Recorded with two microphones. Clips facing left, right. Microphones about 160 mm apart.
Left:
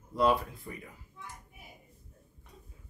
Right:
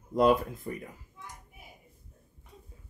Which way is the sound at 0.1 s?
45° right (ahead or behind).